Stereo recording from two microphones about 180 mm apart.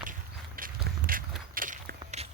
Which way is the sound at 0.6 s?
50° right (ahead or behind).